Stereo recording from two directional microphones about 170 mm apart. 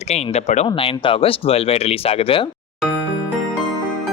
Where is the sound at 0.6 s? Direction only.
30° left (ahead or behind).